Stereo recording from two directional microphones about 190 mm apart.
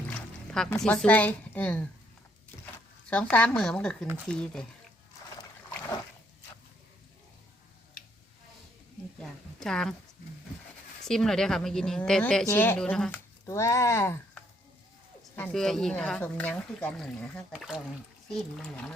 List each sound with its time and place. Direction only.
0.1 s speech: 5° left (ahead or behind)
3.1 s speech: 5° left (ahead or behind)
5.4 s boat: 20° left (ahead or behind)
9.1 s a sound: 5° left (ahead or behind)
11.0 s speech: centre (ahead or behind)
15.2 s speech: centre (ahead or behind)